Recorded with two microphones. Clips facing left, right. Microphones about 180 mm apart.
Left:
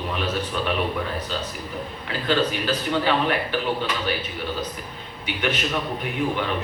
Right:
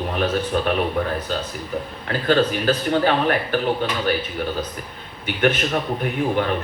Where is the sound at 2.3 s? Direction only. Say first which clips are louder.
Right 4 dB; 50° right (ahead or behind).